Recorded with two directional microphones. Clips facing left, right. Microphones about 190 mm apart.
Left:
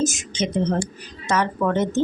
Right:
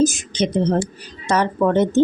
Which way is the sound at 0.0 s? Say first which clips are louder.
Right 5 dB; 35° right (ahead or behind).